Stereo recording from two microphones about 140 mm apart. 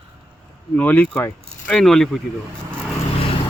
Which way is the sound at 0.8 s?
10° left (ahead or behind).